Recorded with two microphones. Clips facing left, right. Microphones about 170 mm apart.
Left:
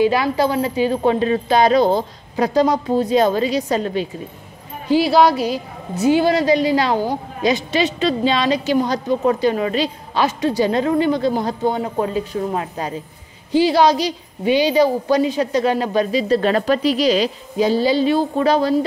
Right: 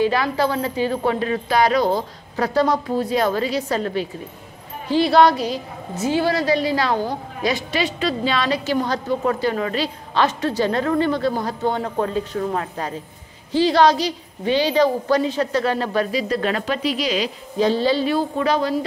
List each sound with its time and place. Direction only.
0.0 s a woman's voice: 15° left (ahead or behind)
4.8 s a woman's voice: 10° left (ahead or behind); by 17.3 s 35° left (ahead or behind)
17.6 s a woman's voice: 10° left (ahead or behind)
18.0 s speech: 30° left (ahead or behind)